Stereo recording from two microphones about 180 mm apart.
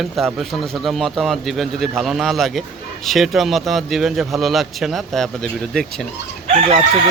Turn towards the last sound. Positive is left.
turn(degrees=-35)  # may be behind; listen again after turning